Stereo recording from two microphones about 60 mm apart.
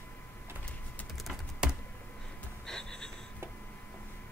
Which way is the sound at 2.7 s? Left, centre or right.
Centre.